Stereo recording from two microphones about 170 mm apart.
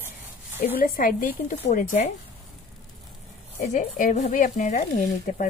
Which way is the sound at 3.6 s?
45° left (ahead or behind).